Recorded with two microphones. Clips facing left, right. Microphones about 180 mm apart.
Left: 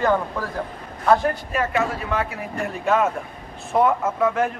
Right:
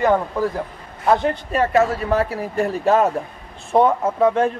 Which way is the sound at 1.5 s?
35° right (ahead or behind).